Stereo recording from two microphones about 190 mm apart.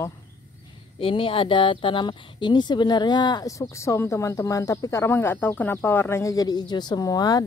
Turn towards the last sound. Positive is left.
turn(degrees=20)  # may be behind; listen again after turning